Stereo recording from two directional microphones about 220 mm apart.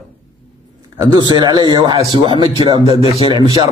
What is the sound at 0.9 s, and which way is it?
A man's voice, 20° right (ahead or behind).